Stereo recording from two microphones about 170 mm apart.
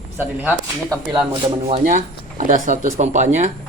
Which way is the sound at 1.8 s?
50° right (ahead or behind).